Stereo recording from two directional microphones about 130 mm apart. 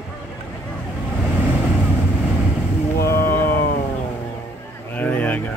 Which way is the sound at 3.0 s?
20° left (ahead or behind).